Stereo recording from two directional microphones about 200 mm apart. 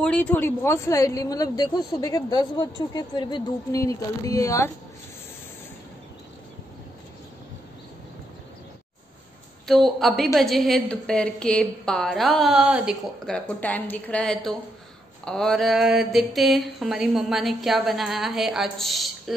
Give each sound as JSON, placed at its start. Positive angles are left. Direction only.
{"t": 0.0, "sound": "speech", "side_deg": 5}
{"t": 9.7, "sound": "a woman's voice", "side_deg": 0}